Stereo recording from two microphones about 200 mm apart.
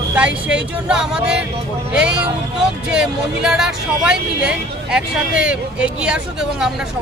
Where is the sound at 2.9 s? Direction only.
5° right (ahead or behind).